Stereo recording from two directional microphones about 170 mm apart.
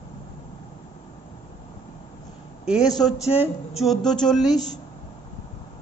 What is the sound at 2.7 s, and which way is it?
A man's voice, centre (ahead or behind).